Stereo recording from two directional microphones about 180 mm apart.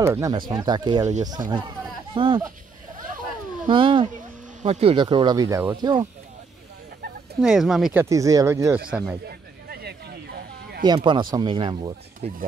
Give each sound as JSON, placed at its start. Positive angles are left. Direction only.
{"t": 0.0, "sound": "speech", "side_deg": -15}
{"t": 3.6, "sound": "speech", "side_deg": -25}
{"t": 7.3, "sound": "speech", "side_deg": 0}
{"t": 8.0, "sound": "speech", "side_deg": -15}
{"t": 9.7, "sound": "a sound", "side_deg": -60}
{"t": 10.8, "sound": "speech", "side_deg": -25}